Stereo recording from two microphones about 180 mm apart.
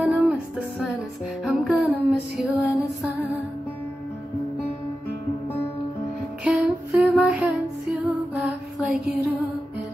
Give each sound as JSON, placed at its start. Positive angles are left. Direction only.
{"t": 0.0, "sound": "music", "side_deg": -5}
{"t": 6.4, "sound": "music", "side_deg": -5}
{"t": 8.4, "sound": "mantra", "side_deg": 0}